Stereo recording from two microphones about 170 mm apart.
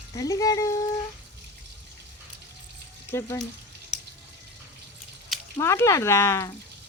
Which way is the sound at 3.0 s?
15° left (ahead or behind).